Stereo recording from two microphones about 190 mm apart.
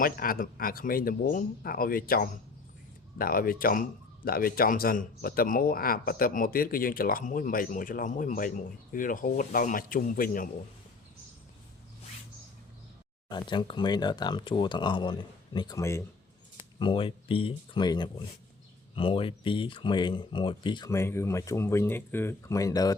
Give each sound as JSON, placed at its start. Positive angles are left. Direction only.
{"t": 0.0, "sound": "speech", "side_deg": 50}
{"t": 13.2, "sound": "speech", "side_deg": 25}
{"t": 16.6, "sound": "speech", "side_deg": 25}